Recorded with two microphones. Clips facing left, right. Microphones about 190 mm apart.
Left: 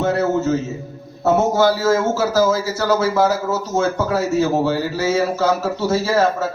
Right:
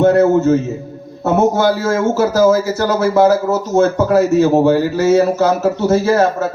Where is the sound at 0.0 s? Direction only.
50° right (ahead or behind).